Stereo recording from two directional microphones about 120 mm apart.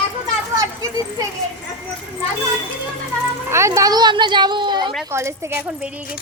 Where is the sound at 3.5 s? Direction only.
25° right (ahead or behind); by 4.9 s 40° right (ahead or behind).